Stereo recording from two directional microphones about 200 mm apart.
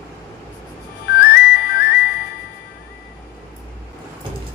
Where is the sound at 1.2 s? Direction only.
50° left (ahead or behind).